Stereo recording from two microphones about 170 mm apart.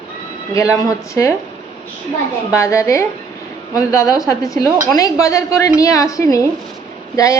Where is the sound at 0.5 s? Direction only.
20° left (ahead or behind).